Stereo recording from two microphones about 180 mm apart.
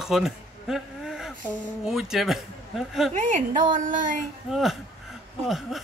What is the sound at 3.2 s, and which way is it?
A woman's voice, 45° right (ahead or behind).